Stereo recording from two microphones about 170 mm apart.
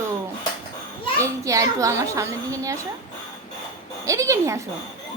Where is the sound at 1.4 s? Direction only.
20° right (ahead or behind).